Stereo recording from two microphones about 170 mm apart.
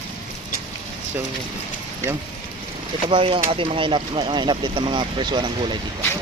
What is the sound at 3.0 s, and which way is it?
Speech, 30° right (ahead or behind).